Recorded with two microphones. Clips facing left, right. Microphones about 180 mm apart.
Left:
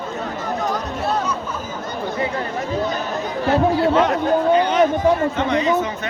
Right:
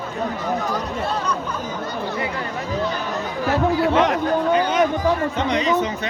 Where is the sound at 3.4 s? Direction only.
25° left (ahead or behind).